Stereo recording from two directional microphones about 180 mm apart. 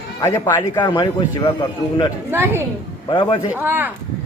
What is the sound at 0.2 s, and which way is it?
Speech, 15° left (ahead or behind).